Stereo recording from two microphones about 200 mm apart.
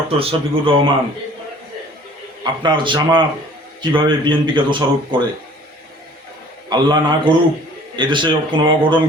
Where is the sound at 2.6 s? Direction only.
25° right (ahead or behind).